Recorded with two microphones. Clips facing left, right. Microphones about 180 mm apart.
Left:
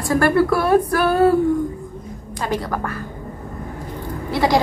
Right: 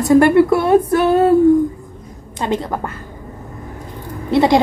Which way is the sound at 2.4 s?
25° right (ahead or behind).